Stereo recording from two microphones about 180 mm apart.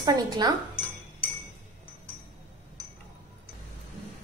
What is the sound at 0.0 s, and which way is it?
Speech, 20° right (ahead or behind).